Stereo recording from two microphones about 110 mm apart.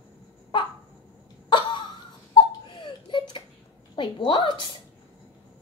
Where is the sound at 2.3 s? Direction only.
45° left (ahead or behind).